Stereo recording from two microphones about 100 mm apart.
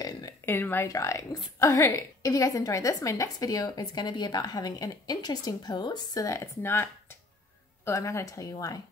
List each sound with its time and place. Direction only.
0.5 s a woman's voice: 20° left (ahead or behind)